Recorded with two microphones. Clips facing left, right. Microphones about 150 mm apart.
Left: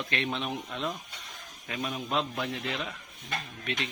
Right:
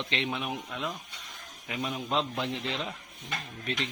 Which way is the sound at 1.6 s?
15° right (ahead or behind).